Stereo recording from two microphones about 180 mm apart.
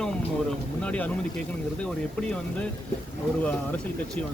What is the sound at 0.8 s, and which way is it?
Speech, 5° left (ahead or behind).